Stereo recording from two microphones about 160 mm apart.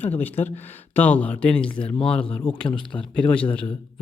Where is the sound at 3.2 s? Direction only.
10° left (ahead or behind).